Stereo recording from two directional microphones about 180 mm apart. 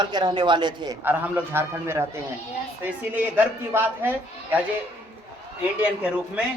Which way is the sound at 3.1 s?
10° right (ahead or behind).